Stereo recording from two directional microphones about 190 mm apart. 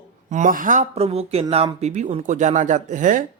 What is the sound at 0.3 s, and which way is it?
Speech, 40° right (ahead or behind).